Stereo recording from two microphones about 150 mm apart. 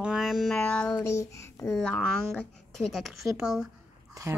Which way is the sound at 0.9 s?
20° left (ahead or behind).